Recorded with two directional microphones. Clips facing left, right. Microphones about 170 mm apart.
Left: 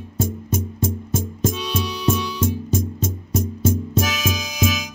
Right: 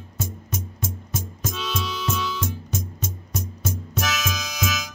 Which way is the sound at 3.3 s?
30° left (ahead or behind).